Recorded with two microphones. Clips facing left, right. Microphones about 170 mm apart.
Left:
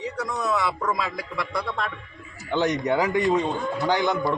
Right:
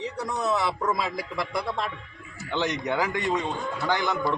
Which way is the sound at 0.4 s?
25° right (ahead or behind).